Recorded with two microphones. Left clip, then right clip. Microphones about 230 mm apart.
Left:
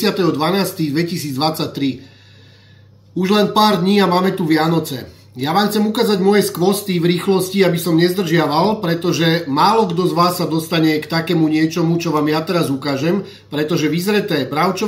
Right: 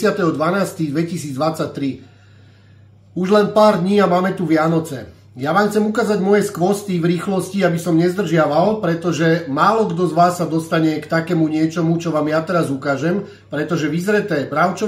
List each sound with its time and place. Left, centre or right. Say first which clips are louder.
0.0 s speech: even; centre
3.3 s speech: right 2 dB; centre